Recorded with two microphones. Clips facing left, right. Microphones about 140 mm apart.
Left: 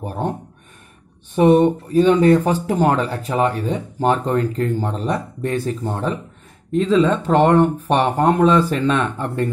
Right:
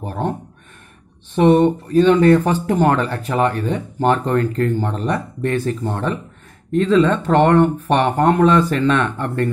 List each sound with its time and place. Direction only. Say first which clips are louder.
0.0 s speech: right 1 dB; 15° left (ahead or behind)
1.3 s speech: even; 10° left (ahead or behind)